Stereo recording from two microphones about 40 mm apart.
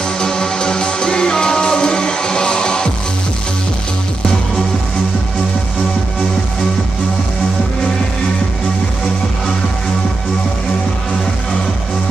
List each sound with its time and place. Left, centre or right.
0.2 s music: centre